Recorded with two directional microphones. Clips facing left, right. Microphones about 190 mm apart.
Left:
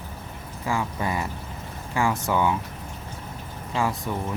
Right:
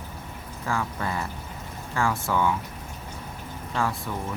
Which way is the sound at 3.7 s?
15° left (ahead or behind).